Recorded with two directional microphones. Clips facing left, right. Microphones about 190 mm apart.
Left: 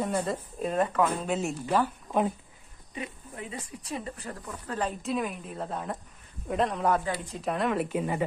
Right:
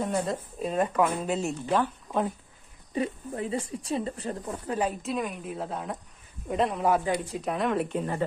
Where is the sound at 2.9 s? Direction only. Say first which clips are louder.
Right 9 dB; 35° right (ahead or behind).